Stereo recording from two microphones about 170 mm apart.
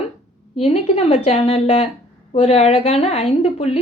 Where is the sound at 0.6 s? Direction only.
35° left (ahead or behind).